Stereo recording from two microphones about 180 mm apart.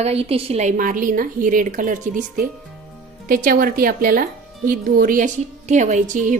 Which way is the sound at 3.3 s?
50° right (ahead or behind).